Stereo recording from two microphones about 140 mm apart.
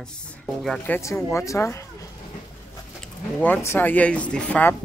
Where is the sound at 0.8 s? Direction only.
15° left (ahead or behind).